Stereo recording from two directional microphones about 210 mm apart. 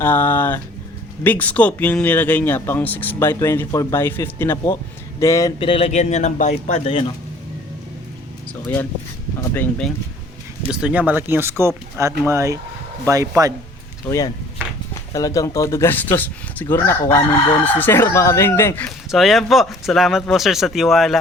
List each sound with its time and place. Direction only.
0.0 s speech: 10° left (ahead or behind); by 7.1 s 25° left (ahead or behind)
9.4 s speech: 5° left (ahead or behind)
10.7 s speech: 5° right (ahead or behind)
14.1 s speech: 15° left (ahead or behind); by 21.2 s centre (ahead or behind)